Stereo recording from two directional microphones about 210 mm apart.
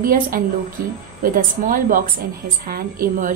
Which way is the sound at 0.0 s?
40° right (ahead or behind).